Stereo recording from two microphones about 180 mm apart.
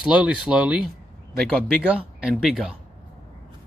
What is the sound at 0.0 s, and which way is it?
A man's voice, 5° right (ahead or behind).